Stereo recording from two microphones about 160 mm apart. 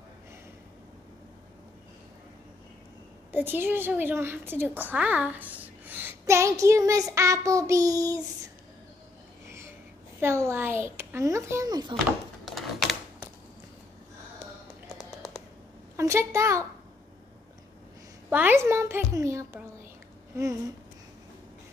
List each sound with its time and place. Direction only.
3.3 s a woman's voice: 10° right (ahead or behind)
10.2 s speech: 15° right (ahead or behind)
16.0 s speech: 15° right (ahead or behind)
18.3 s speech: 10° right (ahead or behind)